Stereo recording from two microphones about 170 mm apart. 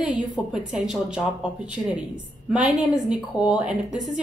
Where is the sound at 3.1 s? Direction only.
5° right (ahead or behind).